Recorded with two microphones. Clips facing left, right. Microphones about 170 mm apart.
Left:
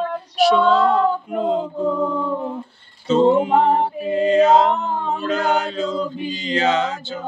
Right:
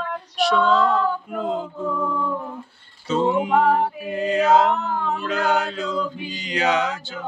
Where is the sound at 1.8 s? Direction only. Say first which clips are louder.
Left 3 dB; 30° left (ahead or behind).